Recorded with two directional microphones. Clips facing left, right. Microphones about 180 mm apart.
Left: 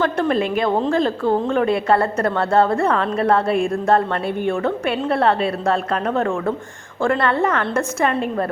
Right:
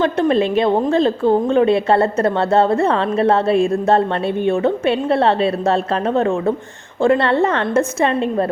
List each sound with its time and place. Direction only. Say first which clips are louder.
0.0 s a woman's voice: right 3 dB; 20° right (ahead or behind)